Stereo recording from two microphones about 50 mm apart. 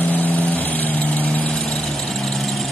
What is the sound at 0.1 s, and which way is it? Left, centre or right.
Vehicle, left.